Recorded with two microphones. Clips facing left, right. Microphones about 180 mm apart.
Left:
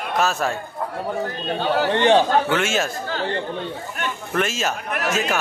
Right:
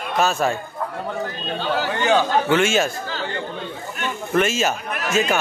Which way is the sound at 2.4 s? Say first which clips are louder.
Right 3 dB; centre (ahead or behind).